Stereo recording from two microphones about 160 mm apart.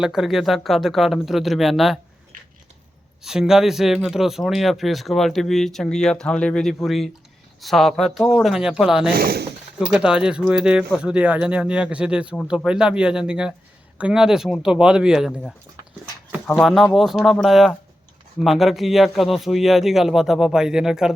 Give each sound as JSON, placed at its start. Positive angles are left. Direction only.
{"t": 0.0, "sound": "speech", "side_deg": -5}
{"t": 3.2, "sound": "speech", "side_deg": -5}
{"t": 9.1, "sound": "speech", "side_deg": -75}
{"t": 9.7, "sound": "speech", "side_deg": -5}
{"t": 16.6, "sound": "speech", "side_deg": 0}